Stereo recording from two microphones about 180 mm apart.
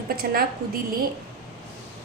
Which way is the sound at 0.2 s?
60° right (ahead or behind).